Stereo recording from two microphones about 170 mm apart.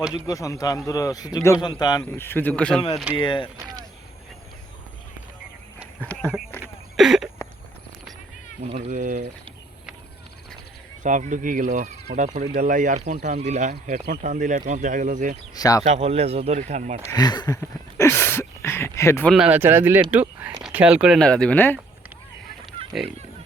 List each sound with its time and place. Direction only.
0.1 s a man's voice: 20° left (ahead or behind)
3.2 s speech: 30° left (ahead or behind)
6.0 s a sound: 10° left (ahead or behind)
6.9 s a sound: centre (ahead or behind)
8.6 s speech: 40° right (ahead or behind)
8.9 s speech: 50° right (ahead or behind)
11.0 s speech: 45° right (ahead or behind)
15.5 s speech: 20° left (ahead or behind)
15.8 s speech: 40° right (ahead or behind)
17.1 s a sound: 25° left (ahead or behind)
19.3 s speech: 5° right (ahead or behind); by 21.8 s 10° left (ahead or behind)